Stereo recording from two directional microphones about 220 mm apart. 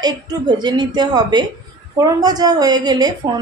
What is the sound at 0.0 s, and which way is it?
A woman's voice, 20° right (ahead or behind).